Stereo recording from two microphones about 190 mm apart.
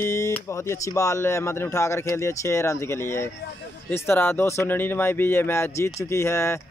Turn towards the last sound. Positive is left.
turn(degrees=15)  # may be behind; listen again after turning